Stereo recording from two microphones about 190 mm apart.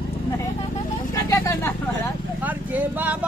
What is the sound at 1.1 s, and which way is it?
Speech, 15° left (ahead or behind).